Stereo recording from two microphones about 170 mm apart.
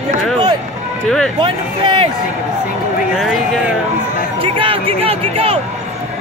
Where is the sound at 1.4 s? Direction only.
30° right (ahead or behind).